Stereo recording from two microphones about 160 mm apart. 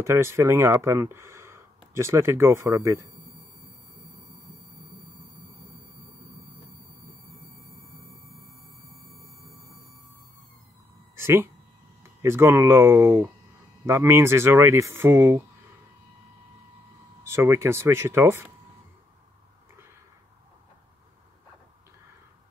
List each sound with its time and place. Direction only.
0.0 s speech: 15° right (ahead or behind)
11.1 s speech: 15° right (ahead or behind)
17.2 s speech: 15° right (ahead or behind)